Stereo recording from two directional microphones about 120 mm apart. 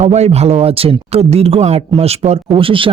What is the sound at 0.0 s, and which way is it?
Speech, 65° right (ahead or behind).